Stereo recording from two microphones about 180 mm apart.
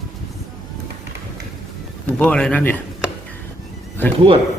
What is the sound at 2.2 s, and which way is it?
Music, 5° left (ahead or behind).